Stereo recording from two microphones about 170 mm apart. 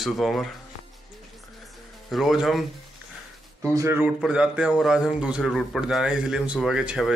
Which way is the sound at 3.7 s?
15° right (ahead or behind).